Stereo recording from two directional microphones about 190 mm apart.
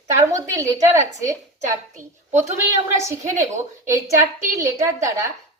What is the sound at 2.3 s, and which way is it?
Speech, 35° right (ahead or behind).